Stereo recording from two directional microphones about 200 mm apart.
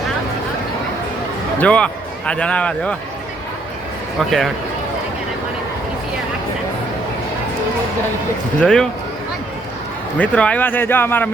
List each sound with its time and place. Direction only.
1.5 s speech: 5° left (ahead or behind)
4.2 s speech: centre (ahead or behind)
8.6 s speech: 5° left (ahead or behind)
10.2 s speech: 5° left (ahead or behind)